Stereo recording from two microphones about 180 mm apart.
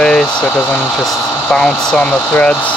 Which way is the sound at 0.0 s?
5° left (ahead or behind).